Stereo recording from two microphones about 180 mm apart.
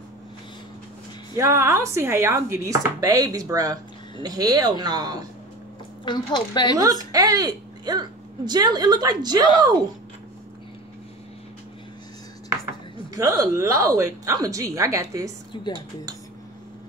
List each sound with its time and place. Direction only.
1.3 s a woman's voice: 15° right (ahead or behind)
6.0 s speech: 25° left (ahead or behind)
6.8 s a woman's voice: 20° right (ahead or behind)
13.1 s speech: 20° right (ahead or behind)
15.5 s speech: 25° left (ahead or behind)